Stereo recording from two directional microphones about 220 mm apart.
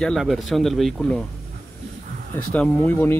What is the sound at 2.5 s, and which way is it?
Speech, 5° left (ahead or behind).